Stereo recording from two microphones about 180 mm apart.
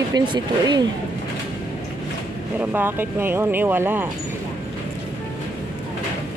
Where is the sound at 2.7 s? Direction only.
10° right (ahead or behind).